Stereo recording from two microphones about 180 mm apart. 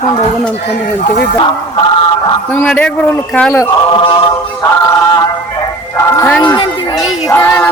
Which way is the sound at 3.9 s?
30° left (ahead or behind).